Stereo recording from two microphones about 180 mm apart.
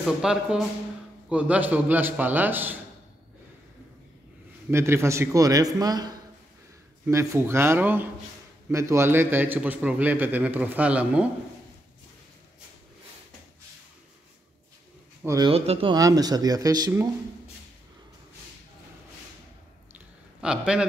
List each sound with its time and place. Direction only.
0.0 s a man's voice: 5° right (ahead or behind)
4.6 s a man's voice: 15° right (ahead or behind)
15.2 s speech: 20° right (ahead or behind)
15.5 s a man's voice: 35° right (ahead or behind)
16.0 s speech: 20° right (ahead or behind)
20.3 s a man's voice: 5° right (ahead or behind)